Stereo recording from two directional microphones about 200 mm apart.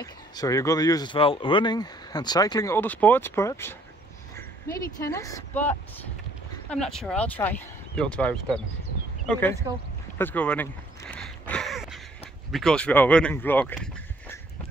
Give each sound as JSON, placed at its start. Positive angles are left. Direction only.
{"t": 0.0, "sound": "speech", "side_deg": 15}
{"t": 4.9, "sound": "speech", "side_deg": 15}
{"t": 10.1, "sound": "a sound", "side_deg": 10}
{"t": 12.4, "sound": "speech", "side_deg": 0}